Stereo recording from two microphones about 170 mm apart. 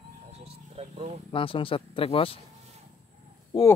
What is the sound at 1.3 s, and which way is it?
Speech, 30° left (ahead or behind).